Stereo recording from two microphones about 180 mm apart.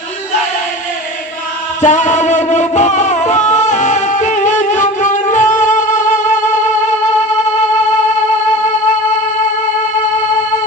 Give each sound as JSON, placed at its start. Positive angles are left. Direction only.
{"t": 1.8, "sound": "music", "side_deg": 45}